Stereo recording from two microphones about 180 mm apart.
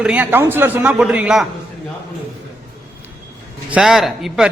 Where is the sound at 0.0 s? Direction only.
5° right (ahead or behind).